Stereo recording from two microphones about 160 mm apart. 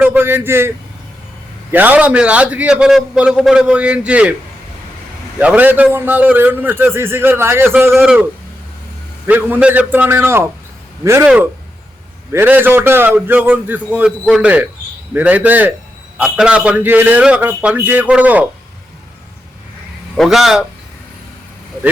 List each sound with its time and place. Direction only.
0.0 s a man's voice: 10° right (ahead or behind)
1.7 s a man's voice: 10° right (ahead or behind)
5.4 s a man's voice: 10° right (ahead or behind)
12.3 s a man's voice: 15° right (ahead or behind)
20.1 s speech: centre (ahead or behind)